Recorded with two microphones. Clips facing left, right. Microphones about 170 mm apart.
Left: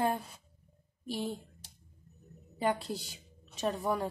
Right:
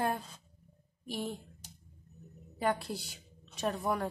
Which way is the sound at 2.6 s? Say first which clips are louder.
Left 1 dB; 15° left (ahead or behind).